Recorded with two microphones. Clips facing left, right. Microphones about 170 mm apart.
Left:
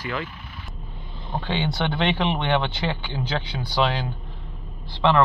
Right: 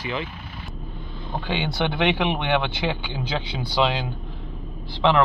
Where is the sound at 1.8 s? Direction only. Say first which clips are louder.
Right 3 dB; 10° right (ahead or behind).